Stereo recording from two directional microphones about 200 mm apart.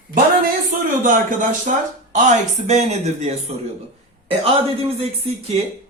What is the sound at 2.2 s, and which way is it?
Speech, 35° right (ahead or behind).